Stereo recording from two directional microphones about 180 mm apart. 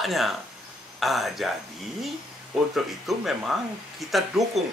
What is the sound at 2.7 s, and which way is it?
Speech, centre (ahead or behind).